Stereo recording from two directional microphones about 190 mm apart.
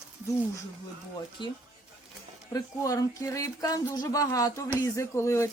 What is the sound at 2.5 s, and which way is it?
Speech, 15° left (ahead or behind).